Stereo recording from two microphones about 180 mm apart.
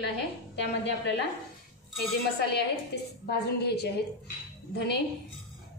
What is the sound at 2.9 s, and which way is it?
A woman's voice, 65° left (ahead or behind).